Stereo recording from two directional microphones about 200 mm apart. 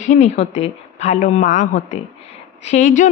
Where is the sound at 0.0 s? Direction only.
35° left (ahead or behind).